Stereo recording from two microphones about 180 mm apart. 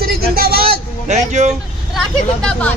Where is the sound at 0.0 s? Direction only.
60° right (ahead or behind).